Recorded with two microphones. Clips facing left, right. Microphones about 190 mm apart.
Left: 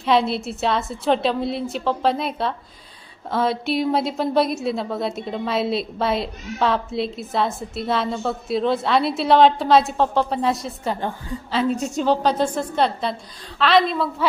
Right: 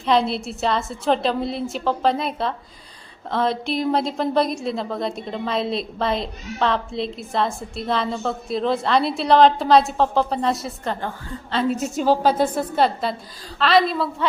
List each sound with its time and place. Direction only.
0.0 s a woman's voice: centre (ahead or behind)